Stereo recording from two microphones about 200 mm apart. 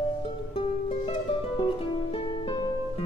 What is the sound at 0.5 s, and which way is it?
Music, 25° left (ahead or behind).